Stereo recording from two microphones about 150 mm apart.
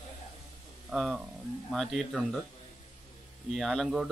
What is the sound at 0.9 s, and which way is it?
Speech, 5° right (ahead or behind).